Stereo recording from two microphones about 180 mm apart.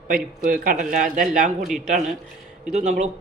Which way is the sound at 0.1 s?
50° right (ahead or behind).